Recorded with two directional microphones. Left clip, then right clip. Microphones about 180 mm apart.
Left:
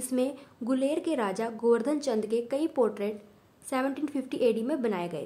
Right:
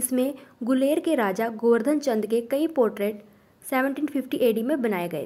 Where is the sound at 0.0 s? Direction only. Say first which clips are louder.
Right 4 dB; 20° right (ahead or behind).